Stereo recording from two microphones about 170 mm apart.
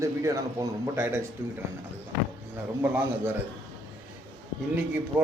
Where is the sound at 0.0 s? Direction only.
20° right (ahead or behind).